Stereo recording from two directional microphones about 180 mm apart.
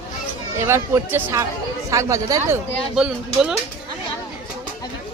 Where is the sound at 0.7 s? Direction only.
15° right (ahead or behind).